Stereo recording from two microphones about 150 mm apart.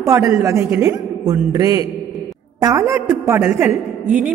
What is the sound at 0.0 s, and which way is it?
A man's voice, 20° right (ahead or behind).